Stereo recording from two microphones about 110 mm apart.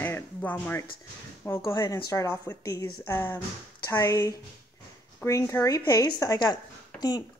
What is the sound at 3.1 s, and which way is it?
Speech, 15° left (ahead or behind).